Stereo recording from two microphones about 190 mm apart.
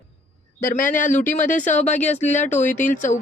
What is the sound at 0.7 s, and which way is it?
Speech, 45° left (ahead or behind).